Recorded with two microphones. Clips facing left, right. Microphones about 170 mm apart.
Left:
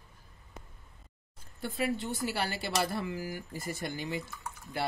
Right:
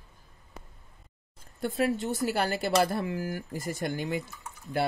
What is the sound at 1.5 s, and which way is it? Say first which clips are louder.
A woman's voice: right 5 dB; 45° right (ahead or behind).